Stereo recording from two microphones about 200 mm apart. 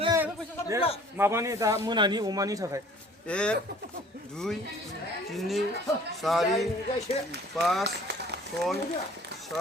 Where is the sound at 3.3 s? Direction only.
5° left (ahead or behind).